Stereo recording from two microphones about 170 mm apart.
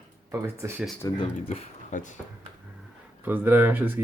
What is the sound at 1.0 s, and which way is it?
Speech, 20° left (ahead or behind).